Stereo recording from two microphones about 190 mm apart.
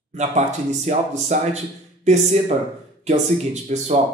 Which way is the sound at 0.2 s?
35° right (ahead or behind).